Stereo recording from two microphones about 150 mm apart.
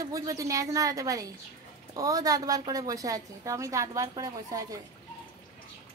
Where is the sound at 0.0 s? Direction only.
20° right (ahead or behind).